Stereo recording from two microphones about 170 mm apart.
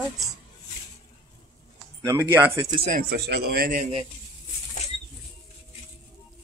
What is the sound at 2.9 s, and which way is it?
A man's voice, 60° right (ahead or behind).